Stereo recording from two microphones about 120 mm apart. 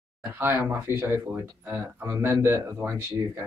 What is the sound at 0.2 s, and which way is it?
Speech, 15° right (ahead or behind).